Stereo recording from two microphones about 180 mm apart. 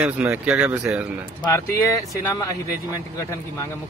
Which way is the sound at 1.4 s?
15° left (ahead or behind).